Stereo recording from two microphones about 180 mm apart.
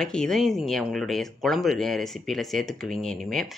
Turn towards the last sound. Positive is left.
turn(degrees=0)  # may be behind; listen again after turning